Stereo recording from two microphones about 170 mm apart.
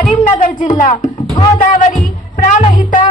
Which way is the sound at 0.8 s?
50° left (ahead or behind).